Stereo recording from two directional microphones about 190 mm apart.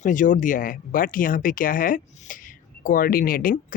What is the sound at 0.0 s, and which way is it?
Speech, 45° left (ahead or behind).